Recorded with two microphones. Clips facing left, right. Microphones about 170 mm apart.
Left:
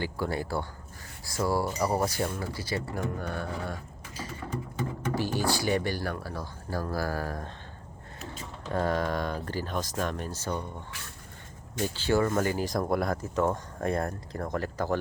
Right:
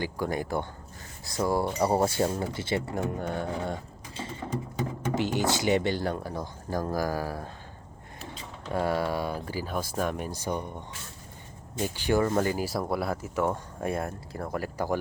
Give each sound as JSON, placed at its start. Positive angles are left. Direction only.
{"t": 0.0, "sound": "speech", "side_deg": -15}
{"t": 8.7, "sound": "speech", "side_deg": -10}
{"t": 12.6, "sound": "speech", "side_deg": -5}